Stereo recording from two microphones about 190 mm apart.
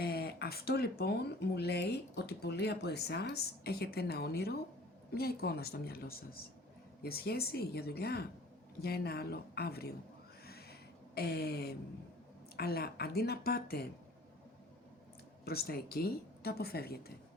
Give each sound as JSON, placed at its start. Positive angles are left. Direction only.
{"t": 0.0, "sound": "a woman's voice", "side_deg": 55}
{"t": 10.4, "sound": "a sound", "side_deg": 55}
{"t": 12.5, "sound": "speech", "side_deg": 55}
{"t": 15.4, "sound": "a woman's voice", "side_deg": 55}